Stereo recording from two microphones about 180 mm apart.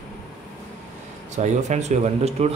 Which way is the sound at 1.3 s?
40° right (ahead or behind).